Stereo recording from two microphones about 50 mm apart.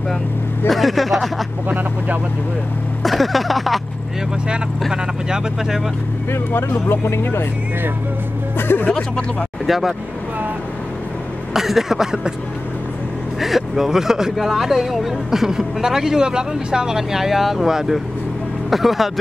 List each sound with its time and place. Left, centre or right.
0.7 s speech: centre
1.7 s speech: right
3.0 s a sound: centre
4.9 s speech: centre
6.3 s speech: left
8.5 s speech: left
9.7 s speech: centre
11.5 s speech: centre
13.4 s speech: centre